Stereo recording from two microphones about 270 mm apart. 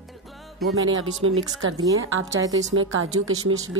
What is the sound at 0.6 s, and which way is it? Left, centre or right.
A woman's voice, right.